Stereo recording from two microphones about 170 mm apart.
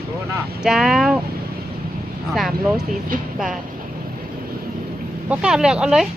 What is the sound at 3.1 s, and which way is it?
Speech, 55° right (ahead or behind).